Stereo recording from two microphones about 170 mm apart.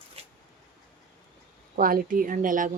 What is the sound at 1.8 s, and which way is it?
Speech, 55° right (ahead or behind).